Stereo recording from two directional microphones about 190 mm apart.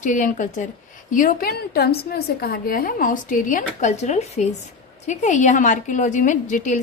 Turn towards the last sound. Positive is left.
turn(degrees=40)  # may be behind; listen again after turning